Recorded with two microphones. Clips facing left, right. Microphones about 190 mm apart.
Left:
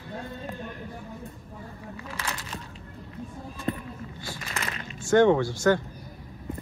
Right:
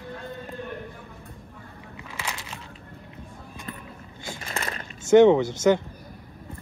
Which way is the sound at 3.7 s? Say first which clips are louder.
Left 10 dB; 35° left (ahead or behind).